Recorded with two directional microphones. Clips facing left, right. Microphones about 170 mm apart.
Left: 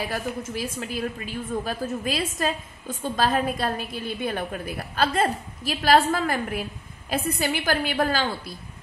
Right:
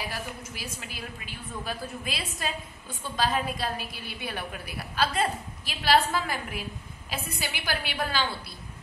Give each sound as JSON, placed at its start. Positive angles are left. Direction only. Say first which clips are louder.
{"t": 0.1, "sound": "a woman's voice", "louder": "left 8 dB", "side_deg": 50}